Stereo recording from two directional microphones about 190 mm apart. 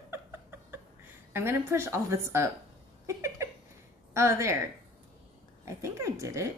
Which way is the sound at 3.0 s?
15° right (ahead or behind).